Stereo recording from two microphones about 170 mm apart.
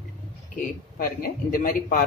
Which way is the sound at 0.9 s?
60° left (ahead or behind).